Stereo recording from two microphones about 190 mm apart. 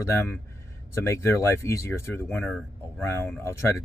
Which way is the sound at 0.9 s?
15° left (ahead or behind).